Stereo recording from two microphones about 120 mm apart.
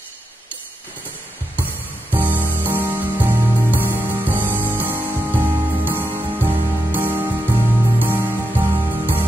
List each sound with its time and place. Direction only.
2.0 s music: 15° right (ahead or behind)